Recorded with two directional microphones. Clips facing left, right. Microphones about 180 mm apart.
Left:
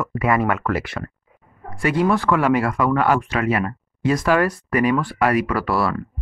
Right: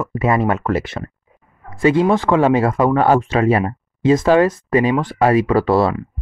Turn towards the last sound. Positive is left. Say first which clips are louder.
# right 6 dB
turn(degrees=-25)  # may be behind; listen again after turning